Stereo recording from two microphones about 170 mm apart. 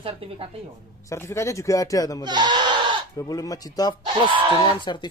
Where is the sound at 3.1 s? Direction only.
20° left (ahead or behind).